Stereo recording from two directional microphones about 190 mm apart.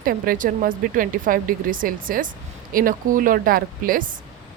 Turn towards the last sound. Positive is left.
turn(degrees=-50)  # may be behind; listen again after turning